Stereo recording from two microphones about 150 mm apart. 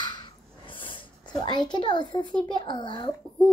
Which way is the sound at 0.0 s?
30° left (ahead or behind).